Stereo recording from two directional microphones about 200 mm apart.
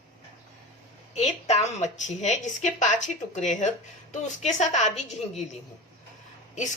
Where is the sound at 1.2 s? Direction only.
35° left (ahead or behind).